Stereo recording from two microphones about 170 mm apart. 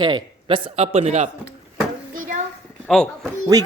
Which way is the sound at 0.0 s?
30° right (ahead or behind).